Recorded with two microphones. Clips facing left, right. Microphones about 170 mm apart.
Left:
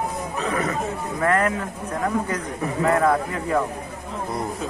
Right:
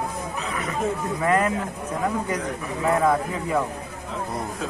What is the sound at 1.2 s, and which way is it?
Speech, 15° right (ahead or behind).